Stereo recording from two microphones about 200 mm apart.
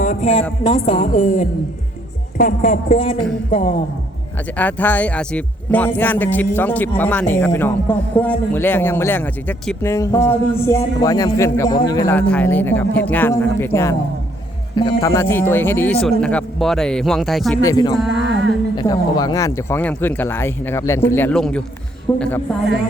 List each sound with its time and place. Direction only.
0.0 s speech: 35° left (ahead or behind)
0.6 s music: 25° left (ahead or behind)
2.4 s speech: 40° left (ahead or behind)
4.5 s speech: 10° left (ahead or behind)
12.1 s a man's voice: 10° left (ahead or behind)
17.6 s speech: 20° left (ahead or behind)
17.9 s a man's voice: centre (ahead or behind)
18.8 s speech: 20° left (ahead or behind)